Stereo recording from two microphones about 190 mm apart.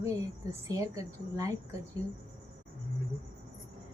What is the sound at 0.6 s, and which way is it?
Speech, 15° right (ahead or behind).